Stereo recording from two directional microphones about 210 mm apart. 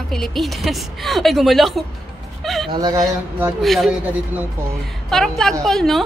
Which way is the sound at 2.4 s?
Centre (ahead or behind).